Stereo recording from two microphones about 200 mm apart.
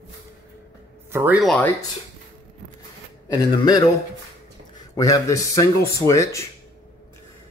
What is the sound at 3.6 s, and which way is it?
Speech, 20° left (ahead or behind).